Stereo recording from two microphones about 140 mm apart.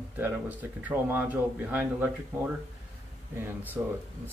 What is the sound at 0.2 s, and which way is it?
Speech, 10° right (ahead or behind).